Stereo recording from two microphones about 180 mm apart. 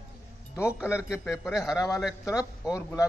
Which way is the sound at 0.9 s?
15° left (ahead or behind).